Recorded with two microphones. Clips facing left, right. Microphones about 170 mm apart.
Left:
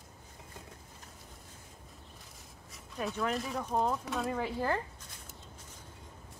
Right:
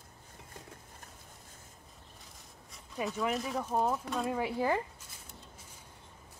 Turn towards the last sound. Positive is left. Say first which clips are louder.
# right 2 dB
turn(degrees=-10)  # may be behind; listen again after turning